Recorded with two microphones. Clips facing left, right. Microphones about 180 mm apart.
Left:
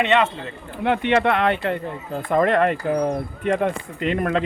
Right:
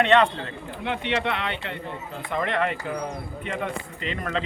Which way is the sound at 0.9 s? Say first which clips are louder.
Left 8 dB; 50° left (ahead or behind).